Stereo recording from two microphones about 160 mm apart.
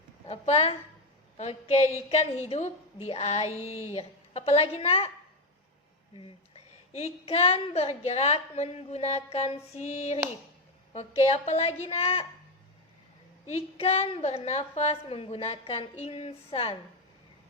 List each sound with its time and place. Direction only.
0.3 s a woman's voice: 40° left (ahead or behind)
6.1 s a woman's voice: 35° left (ahead or behind)
13.5 s a woman's voice: 40° left (ahead or behind)